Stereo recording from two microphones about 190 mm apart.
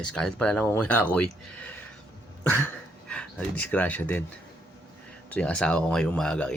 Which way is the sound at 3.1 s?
5° left (ahead or behind).